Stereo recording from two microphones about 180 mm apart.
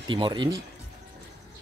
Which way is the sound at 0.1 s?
25° right (ahead or behind).